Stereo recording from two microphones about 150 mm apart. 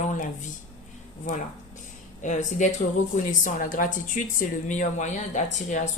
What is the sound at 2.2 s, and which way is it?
Speech, 55° left (ahead or behind).